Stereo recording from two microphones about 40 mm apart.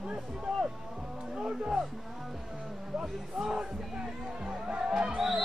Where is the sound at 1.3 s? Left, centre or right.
Right.